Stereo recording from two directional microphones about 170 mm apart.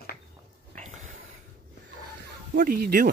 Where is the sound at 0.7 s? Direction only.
45° right (ahead or behind).